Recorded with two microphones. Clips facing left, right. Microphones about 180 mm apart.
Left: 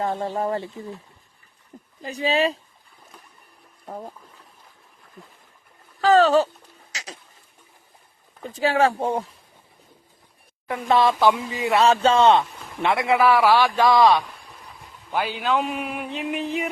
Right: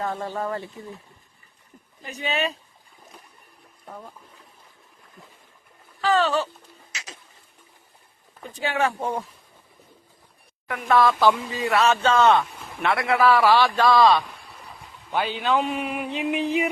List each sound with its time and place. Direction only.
0.0 s speech: 30° left (ahead or behind)
2.0 s speech: 30° left (ahead or behind)
6.0 s a sound: 40° left (ahead or behind)
8.6 s speech: 35° left (ahead or behind)
10.7 s speech: 25° left (ahead or behind)
11.2 s a man's voice: 15° left (ahead or behind)
11.7 s a man's voice: 30° left (ahead or behind); by 16.6 s centre (ahead or behind)